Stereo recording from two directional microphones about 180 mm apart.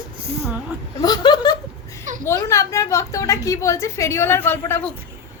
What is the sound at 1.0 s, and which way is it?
A woman's voice, 20° left (ahead or behind).